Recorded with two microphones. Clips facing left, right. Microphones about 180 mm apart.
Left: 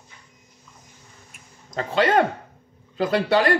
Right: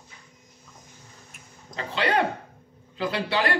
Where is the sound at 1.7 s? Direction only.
45° left (ahead or behind).